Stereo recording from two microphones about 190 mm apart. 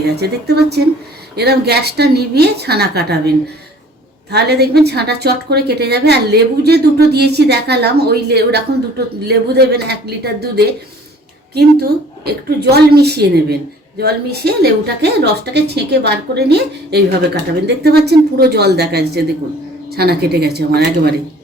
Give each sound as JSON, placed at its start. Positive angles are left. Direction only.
{"t": 0.2, "sound": "a woman's voice", "side_deg": -60}